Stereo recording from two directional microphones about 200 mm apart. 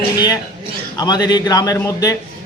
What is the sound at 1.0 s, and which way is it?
A man's voice, 20° left (ahead or behind).